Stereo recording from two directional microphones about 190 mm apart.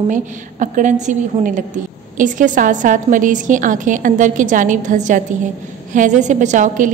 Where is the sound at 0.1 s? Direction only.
40° right (ahead or behind).